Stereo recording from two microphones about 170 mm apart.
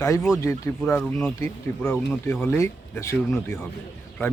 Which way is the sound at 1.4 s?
15° left (ahead or behind).